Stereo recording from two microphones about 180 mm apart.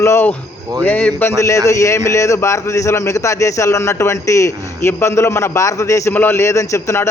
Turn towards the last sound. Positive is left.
turn(degrees=15)  # may be behind; listen again after turning